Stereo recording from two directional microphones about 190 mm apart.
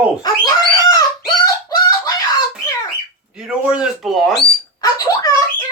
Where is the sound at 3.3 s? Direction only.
5° right (ahead or behind).